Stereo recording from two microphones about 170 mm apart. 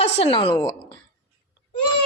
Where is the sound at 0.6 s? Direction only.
20° left (ahead or behind).